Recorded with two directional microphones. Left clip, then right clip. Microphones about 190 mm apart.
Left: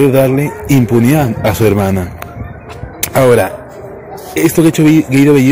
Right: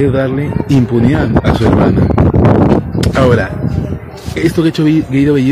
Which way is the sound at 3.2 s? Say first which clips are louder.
Left 3 dB; 10° left (ahead or behind).